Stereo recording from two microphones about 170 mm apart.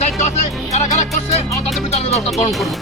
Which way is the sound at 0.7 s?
40° left (ahead or behind).